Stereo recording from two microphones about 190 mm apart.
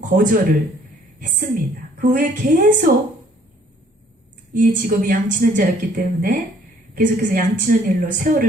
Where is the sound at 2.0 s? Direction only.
45° right (ahead or behind).